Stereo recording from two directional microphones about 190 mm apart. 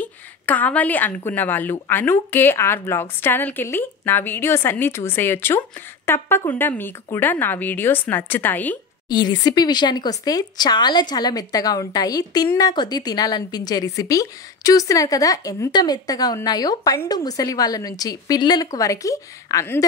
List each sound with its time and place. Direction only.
0.0 s a woman's voice: 10° left (ahead or behind)
9.1 s speech: 20° left (ahead or behind)